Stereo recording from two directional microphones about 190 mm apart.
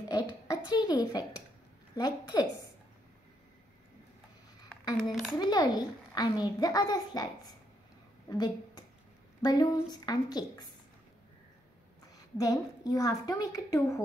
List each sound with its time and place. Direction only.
0.1 s a child's voice: 20° left (ahead or behind)
5.4 s a child's voice: 20° left (ahead or behind)
8.3 s a woman's voice: 20° left (ahead or behind)
12.4 s a woman's voice: 20° left (ahead or behind)